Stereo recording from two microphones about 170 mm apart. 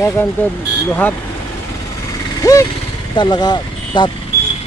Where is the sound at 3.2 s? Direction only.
25° left (ahead or behind).